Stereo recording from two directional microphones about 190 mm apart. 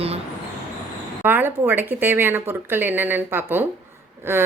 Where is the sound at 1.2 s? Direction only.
10° right (ahead or behind).